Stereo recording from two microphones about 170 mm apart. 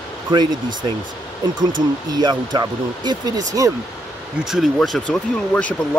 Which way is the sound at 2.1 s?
25° right (ahead or behind).